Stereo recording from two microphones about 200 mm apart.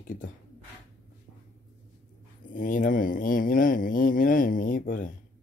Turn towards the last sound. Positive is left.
turn(degrees=40)  # may be behind; listen again after turning